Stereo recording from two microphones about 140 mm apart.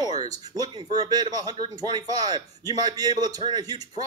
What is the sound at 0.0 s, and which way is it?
A man's voice, 30° right (ahead or behind).